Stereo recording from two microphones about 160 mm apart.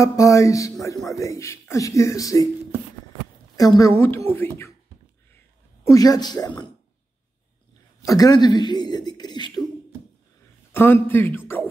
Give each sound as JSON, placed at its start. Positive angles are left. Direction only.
{"t": 0.0, "sound": "a man's voice", "side_deg": 20}
{"t": 3.5, "sound": "a man's voice", "side_deg": 20}
{"t": 5.9, "sound": "a man's voice", "side_deg": 25}
{"t": 8.0, "sound": "a man's voice", "side_deg": 20}
{"t": 10.7, "sound": "a man's voice", "side_deg": 15}